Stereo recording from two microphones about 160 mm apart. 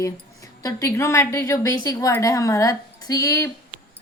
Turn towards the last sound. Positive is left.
turn(degrees=20)  # may be behind; listen again after turning